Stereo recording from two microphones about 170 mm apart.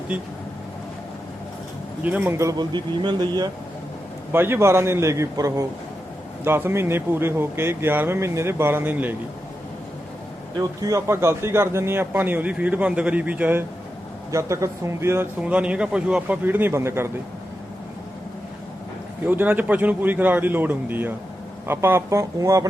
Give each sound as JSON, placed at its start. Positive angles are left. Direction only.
{"t": 0.1, "sound": "speech", "side_deg": -5}
{"t": 2.0, "sound": "speech", "side_deg": -10}
{"t": 4.3, "sound": "speech", "side_deg": -10}
{"t": 10.8, "sound": "speech", "side_deg": -15}
{"t": 19.3, "sound": "speech", "side_deg": -10}